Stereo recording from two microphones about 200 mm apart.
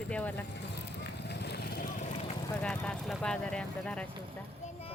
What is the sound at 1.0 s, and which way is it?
Vehicle, 55° left (ahead or behind).